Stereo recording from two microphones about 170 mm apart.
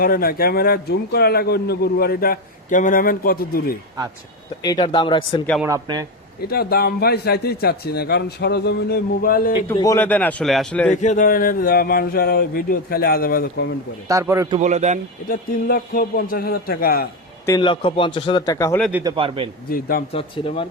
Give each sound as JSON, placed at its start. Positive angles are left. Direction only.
{"t": 0.0, "sound": "speech", "side_deg": 60}
{"t": 4.6, "sound": "a man's voice", "side_deg": 25}
{"t": 5.6, "sound": "speech", "side_deg": -20}
{"t": 6.5, "sound": "speech", "side_deg": 65}
{"t": 9.7, "sound": "a man's voice", "side_deg": 20}
{"t": 10.9, "sound": "speech", "side_deg": 45}
{"t": 14.1, "sound": "a man's voice", "side_deg": -15}
{"t": 14.6, "sound": "a man's voice", "side_deg": -45}
{"t": 15.3, "sound": "speech", "side_deg": 55}
{"t": 17.6, "sound": "a man's voice", "side_deg": 30}
{"t": 19.0, "sound": "a man's voice", "side_deg": -30}
{"t": 20.1, "sound": "speech", "side_deg": 35}